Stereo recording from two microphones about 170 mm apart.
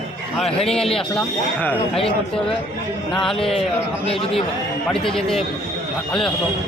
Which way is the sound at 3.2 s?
Centre (ahead or behind).